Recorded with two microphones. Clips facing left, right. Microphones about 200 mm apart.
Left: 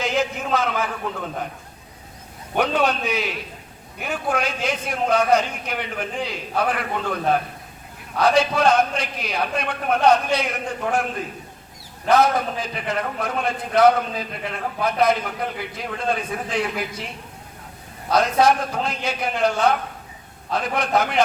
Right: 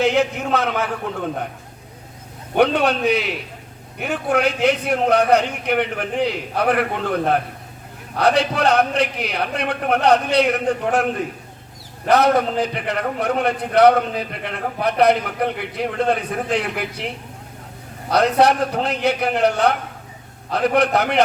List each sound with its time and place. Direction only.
0.0 s a man's voice: 65° right (ahead or behind)
2.6 s a man's voice: 65° right (ahead or behind)
8.2 s a man's voice: 65° right (ahead or behind)
18.1 s a man's voice: 65° right (ahead or behind)